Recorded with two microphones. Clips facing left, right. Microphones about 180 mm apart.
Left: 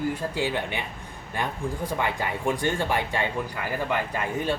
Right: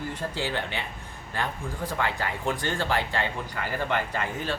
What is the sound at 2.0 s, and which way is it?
Speech, 15° left (ahead or behind).